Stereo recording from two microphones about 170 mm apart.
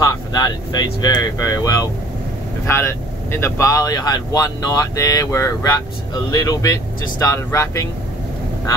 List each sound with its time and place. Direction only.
0.0 s speech: 20° left (ahead or behind)